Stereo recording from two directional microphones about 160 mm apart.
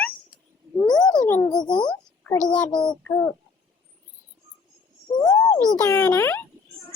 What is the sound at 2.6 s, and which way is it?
Child singing, 25° left (ahead or behind).